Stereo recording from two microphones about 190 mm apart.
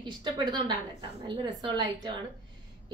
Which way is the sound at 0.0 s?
25° right (ahead or behind).